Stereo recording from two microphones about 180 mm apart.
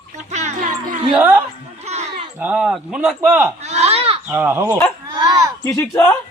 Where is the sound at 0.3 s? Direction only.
40° right (ahead or behind).